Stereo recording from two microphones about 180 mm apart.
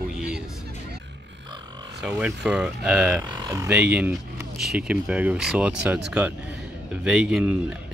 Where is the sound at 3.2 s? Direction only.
15° right (ahead or behind).